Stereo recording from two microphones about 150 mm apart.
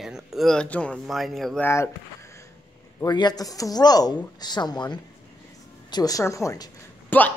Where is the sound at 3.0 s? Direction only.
30° left (ahead or behind).